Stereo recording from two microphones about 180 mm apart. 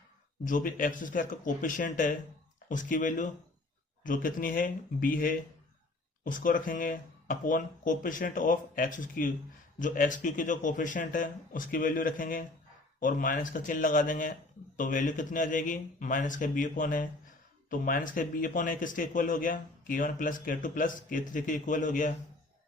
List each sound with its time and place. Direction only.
0.4 s speech: 50° left (ahead or behind)